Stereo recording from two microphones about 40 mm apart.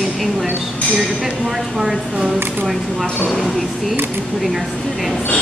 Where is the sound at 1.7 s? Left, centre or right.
Centre.